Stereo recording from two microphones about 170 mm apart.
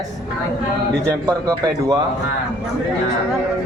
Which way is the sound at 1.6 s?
25° right (ahead or behind).